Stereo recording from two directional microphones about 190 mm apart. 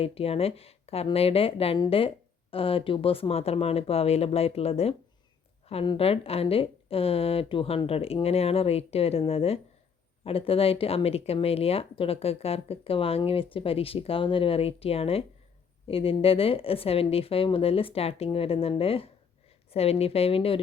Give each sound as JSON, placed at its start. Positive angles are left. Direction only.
{"t": 0.0, "sound": "a woman's voice", "side_deg": 30}